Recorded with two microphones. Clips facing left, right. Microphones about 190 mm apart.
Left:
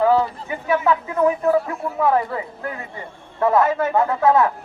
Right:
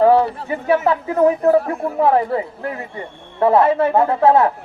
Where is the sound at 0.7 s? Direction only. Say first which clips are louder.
Right 3 dB; 35° right (ahead or behind).